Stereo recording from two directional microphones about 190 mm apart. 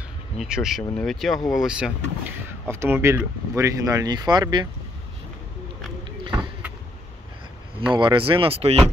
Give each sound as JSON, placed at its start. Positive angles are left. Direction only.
{"t": 0.4, "sound": "speech", "side_deg": -5}
{"t": 7.9, "sound": "speech", "side_deg": -25}